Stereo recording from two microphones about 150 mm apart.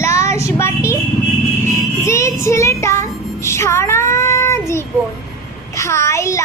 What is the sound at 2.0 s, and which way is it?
Child singing, 20° left (ahead or behind).